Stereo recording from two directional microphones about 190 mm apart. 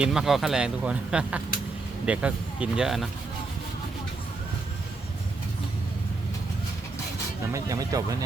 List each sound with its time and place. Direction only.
0.0 s speech: 5° right (ahead or behind)
7.5 s speech: 20° right (ahead or behind)